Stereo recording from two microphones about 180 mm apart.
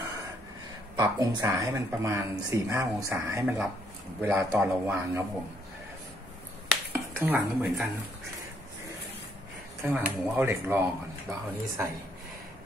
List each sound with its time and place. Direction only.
0.9 s speech: 20° right (ahead or behind)
6.9 s speech: 10° right (ahead or behind)
9.8 s speech: 10° right (ahead or behind)